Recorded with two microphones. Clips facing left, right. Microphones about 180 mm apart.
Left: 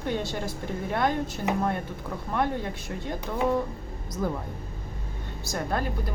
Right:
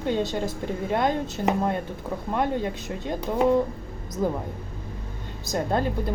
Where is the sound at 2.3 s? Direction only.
15° right (ahead or behind).